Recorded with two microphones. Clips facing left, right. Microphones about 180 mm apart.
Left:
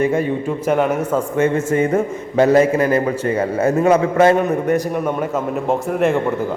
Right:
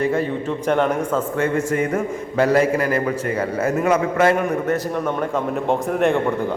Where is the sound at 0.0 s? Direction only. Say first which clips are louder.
Left 3 dB; 20° left (ahead or behind).